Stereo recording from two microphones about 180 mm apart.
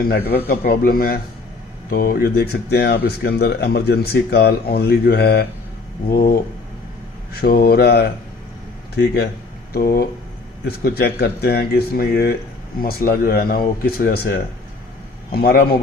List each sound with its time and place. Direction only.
0.3 s speech: 60° left (ahead or behind)
7.4 s speech: 60° left (ahead or behind)